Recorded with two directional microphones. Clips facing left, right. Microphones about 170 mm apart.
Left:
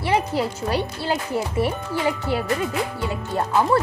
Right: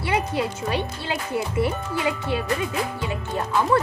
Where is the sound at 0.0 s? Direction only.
30° left (ahead or behind).